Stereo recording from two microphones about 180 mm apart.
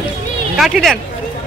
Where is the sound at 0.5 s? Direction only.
Centre (ahead or behind).